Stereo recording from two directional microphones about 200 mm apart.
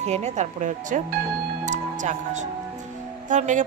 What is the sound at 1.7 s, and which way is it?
Music, 35° right (ahead or behind).